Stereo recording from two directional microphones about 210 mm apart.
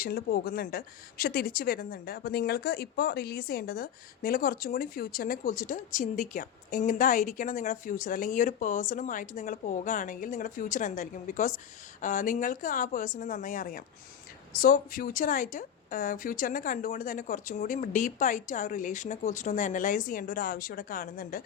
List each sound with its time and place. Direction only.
0.0 s a woman's voice: 45° left (ahead or behind)